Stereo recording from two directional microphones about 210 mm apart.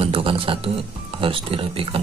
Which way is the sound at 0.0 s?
25° right (ahead or behind).